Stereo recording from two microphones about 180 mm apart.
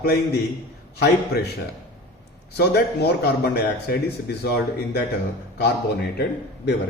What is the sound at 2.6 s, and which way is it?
Speech, 65° left (ahead or behind).